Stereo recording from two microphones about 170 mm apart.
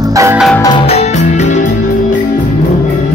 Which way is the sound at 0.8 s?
40° left (ahead or behind).